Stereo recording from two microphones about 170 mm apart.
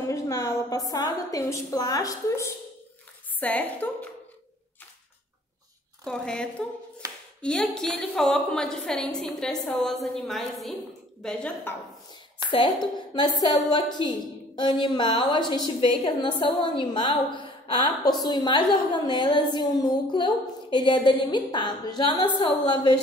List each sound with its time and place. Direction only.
0.1 s a woman's voice: 20° left (ahead or behind)
6.0 s a woman's voice: 5° left (ahead or behind)
7.0 s hands: 20° right (ahead or behind)
7.4 s a woman's voice: 5° left (ahead or behind)
12.4 s a woman's voice: 30° left (ahead or behind)